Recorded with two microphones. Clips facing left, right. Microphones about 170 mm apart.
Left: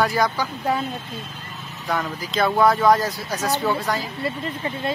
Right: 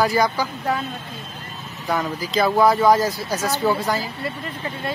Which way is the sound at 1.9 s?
Centre (ahead or behind).